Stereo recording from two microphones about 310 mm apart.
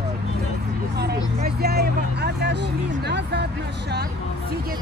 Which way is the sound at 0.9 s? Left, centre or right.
Right.